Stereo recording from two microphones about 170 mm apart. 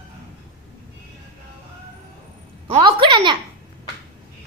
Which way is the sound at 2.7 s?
30° right (ahead or behind).